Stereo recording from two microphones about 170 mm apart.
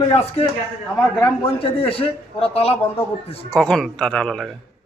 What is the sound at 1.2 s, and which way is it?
A man's voice, 35° left (ahead or behind).